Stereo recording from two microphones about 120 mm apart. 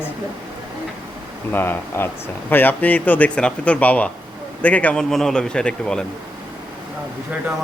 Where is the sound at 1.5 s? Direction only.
15° left (ahead or behind).